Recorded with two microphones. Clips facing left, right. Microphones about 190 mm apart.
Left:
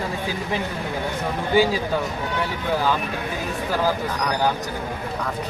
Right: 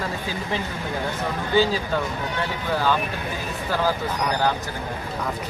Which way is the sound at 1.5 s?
15° left (ahead or behind).